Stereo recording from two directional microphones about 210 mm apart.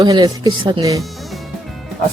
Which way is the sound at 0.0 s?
20° right (ahead or behind).